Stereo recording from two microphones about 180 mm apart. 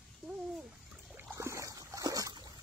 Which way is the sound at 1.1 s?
15° right (ahead or behind).